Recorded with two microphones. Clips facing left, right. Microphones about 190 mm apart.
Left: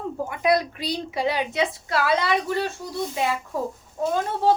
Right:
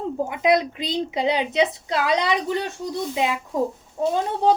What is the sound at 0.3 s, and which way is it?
A woman's voice, 20° right (ahead or behind).